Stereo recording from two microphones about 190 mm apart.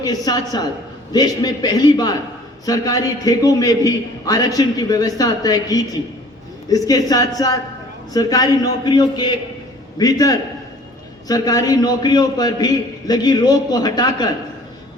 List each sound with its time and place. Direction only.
0.0 s a man's voice: 20° left (ahead or behind)